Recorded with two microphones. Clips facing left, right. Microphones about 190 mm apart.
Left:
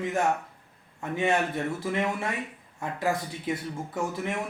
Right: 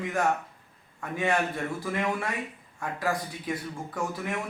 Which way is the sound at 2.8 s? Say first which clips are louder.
Left 1 dB; 25° left (ahead or behind).